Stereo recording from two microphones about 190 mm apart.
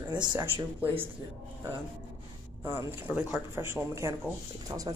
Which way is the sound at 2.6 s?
10° right (ahead or behind).